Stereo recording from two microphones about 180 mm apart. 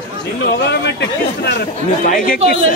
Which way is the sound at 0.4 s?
70° left (ahead or behind).